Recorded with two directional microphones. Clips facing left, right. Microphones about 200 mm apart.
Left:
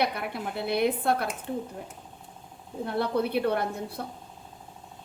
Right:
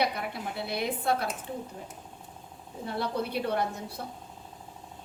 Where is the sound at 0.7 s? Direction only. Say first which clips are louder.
Left 5 dB; 55° left (ahead or behind).